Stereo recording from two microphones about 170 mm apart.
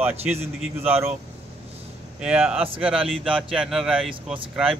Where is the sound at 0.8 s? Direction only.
35° right (ahead or behind).